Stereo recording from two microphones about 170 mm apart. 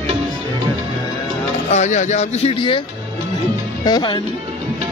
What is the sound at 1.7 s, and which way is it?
Speech, 45° left (ahead or behind).